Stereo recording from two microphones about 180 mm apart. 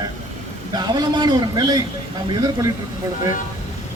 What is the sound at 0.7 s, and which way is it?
A man's voice, 20° right (ahead or behind).